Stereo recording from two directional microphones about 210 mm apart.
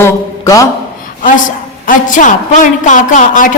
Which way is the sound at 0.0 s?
15° left (ahead or behind).